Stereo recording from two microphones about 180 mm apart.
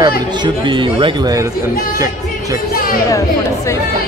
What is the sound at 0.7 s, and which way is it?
Speech, 25° right (ahead or behind).